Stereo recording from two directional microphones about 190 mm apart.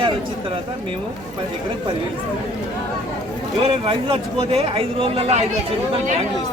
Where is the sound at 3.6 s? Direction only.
30° right (ahead or behind).